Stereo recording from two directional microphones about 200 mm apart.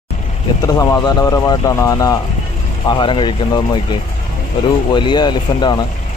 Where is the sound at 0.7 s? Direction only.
15° left (ahead or behind).